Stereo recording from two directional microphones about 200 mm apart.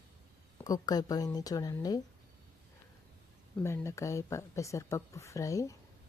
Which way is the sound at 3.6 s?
15° left (ahead or behind).